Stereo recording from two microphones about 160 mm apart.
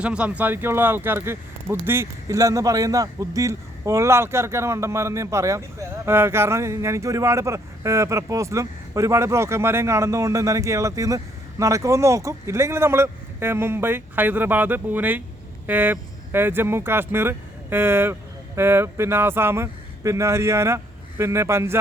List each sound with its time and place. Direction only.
0.0 s speech: 5° right (ahead or behind)